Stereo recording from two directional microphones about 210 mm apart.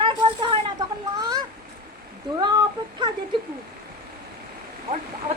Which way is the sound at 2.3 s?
20° right (ahead or behind).